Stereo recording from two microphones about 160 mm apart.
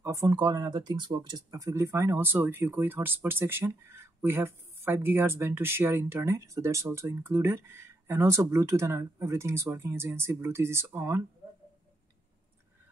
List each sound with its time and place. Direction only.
0.0 s speech: 20° right (ahead or behind)